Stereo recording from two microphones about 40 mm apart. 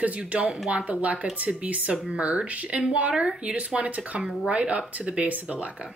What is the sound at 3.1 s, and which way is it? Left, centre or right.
Speech, centre.